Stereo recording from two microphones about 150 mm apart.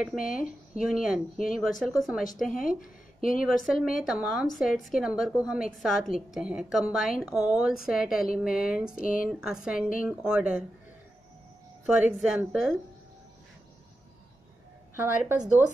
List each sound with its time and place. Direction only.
0.2 s speech: 65° left (ahead or behind)
0.7 s a woman's voice: 5° right (ahead or behind)
2.8 s speech: 65° left (ahead or behind)
3.6 s a woman's voice: centre (ahead or behind)
11.8 s a woman's voice: 5° right (ahead or behind)
15.0 s speech: 15° right (ahead or behind)